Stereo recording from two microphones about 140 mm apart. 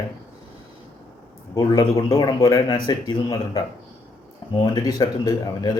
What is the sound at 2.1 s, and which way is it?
Speech, 20° left (ahead or behind).